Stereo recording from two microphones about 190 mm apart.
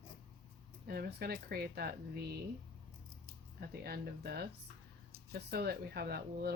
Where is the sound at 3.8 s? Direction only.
55° right (ahead or behind).